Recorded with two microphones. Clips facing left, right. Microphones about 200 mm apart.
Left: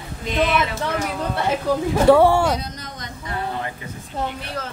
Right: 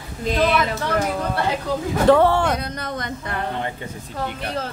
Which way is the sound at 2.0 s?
10° left (ahead or behind).